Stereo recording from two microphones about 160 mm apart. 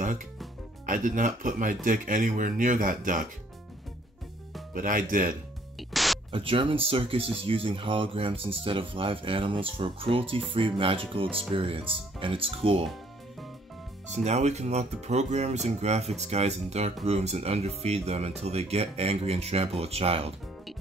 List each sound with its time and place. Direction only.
0.8 s speech: 55° right (ahead or behind)
4.7 s speech: 55° right (ahead or behind)
5.8 s music: centre (ahead or behind)
6.3 s speech: 35° right (ahead or behind)
14.1 s speech: 45° right (ahead or behind)